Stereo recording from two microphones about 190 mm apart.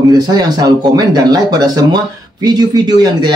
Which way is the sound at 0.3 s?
20° right (ahead or behind).